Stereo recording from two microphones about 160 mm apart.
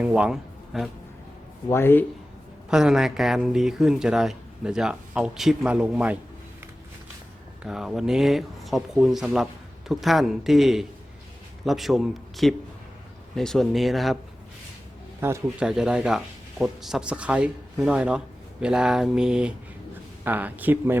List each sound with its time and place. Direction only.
0.0 s speech: 5° right (ahead or behind)
1.7 s speech: 15° left (ahead or behind)
2.6 s speech: 5° right (ahead or behind)
7.6 s a man's voice: 5° right (ahead or behind)
15.2 s speech: 10° right (ahead or behind)